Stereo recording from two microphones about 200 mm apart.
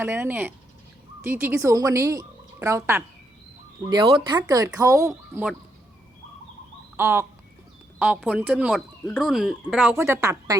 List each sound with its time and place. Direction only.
0.0 s a woman's voice: 10° right (ahead or behind)
6.9 s a sound: 10° right (ahead or behind)
7.9 s speech: 5° right (ahead or behind)
9.9 s speech: 15° right (ahead or behind)